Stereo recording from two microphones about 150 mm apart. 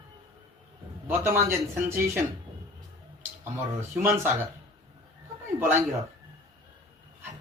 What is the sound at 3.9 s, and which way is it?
Speech, 15° right (ahead or behind).